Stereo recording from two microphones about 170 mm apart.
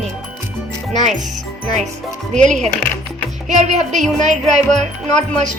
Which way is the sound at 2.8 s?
10° left (ahead or behind).